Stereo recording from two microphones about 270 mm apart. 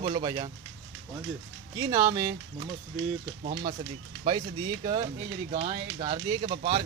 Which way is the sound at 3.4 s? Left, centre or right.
Right.